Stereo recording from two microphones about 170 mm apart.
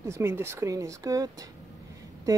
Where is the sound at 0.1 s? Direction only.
15° right (ahead or behind).